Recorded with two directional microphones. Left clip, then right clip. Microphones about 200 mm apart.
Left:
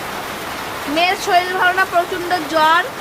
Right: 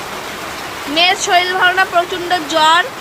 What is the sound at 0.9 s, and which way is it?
A woman's voice, 10° left (ahead or behind).